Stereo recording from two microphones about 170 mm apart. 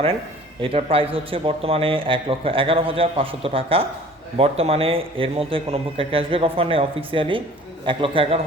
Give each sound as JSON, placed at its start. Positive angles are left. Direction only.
{"t": 0.6, "sound": "a man's voice", "side_deg": -35}